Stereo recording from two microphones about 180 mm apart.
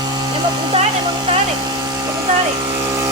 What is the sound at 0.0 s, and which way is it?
Speech, 25° right (ahead or behind).